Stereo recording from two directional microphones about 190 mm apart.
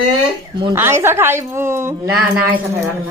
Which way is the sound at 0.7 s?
15° right (ahead or behind).